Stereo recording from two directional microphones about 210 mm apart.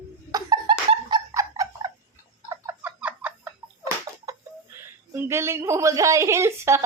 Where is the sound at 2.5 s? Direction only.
10° right (ahead or behind).